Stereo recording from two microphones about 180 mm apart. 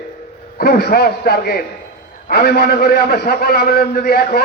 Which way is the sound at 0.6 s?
60° left (ahead or behind).